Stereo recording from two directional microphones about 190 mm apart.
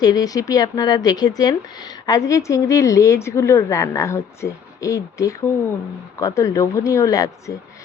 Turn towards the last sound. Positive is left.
turn(degrees=15)  # may be behind; listen again after turning